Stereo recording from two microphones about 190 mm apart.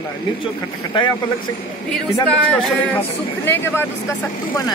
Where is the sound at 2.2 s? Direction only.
5° left (ahead or behind).